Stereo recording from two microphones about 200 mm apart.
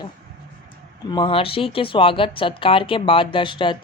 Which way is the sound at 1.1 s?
25° left (ahead or behind).